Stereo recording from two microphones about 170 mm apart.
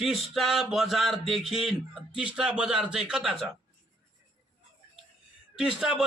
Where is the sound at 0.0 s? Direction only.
Centre (ahead or behind).